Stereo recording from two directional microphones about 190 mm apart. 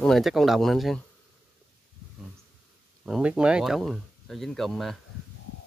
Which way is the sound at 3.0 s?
5° right (ahead or behind).